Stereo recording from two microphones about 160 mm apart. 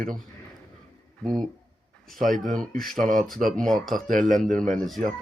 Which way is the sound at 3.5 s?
5° left (ahead or behind).